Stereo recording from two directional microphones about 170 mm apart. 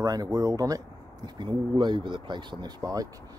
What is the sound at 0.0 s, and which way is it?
Speech, 20° right (ahead or behind).